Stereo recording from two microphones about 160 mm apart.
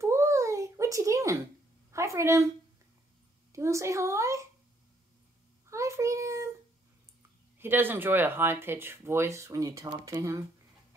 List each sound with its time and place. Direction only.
0.0 s a sound: 20° right (ahead or behind)
1.9 s a woman's voice: 20° right (ahead or behind)
3.5 s a child's voice: 20° right (ahead or behind)
5.7 s child singing: 20° right (ahead or behind)
7.5 s speech: 15° right (ahead or behind)